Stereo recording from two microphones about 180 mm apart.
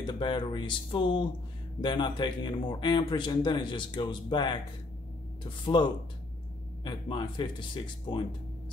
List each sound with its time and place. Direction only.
0.0 s speech: 25° left (ahead or behind)